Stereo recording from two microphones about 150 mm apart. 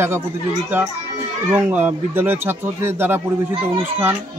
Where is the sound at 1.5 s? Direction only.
10° right (ahead or behind).